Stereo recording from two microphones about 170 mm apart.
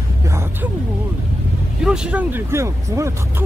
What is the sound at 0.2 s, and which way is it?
Music, 15° right (ahead or behind).